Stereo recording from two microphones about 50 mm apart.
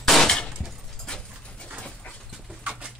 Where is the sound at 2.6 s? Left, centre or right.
Right.